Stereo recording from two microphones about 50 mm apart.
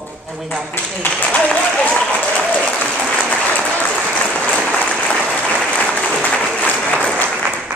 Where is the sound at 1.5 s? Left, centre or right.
Left.